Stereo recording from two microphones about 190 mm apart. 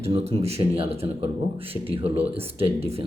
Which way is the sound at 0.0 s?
35° right (ahead or behind).